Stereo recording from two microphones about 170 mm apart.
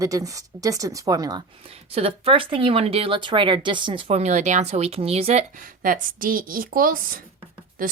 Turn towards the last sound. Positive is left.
turn(degrees=-55)  # may be behind; listen again after turning